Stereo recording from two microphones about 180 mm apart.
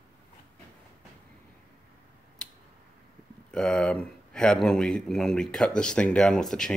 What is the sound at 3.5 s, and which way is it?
Speech, 5° left (ahead or behind).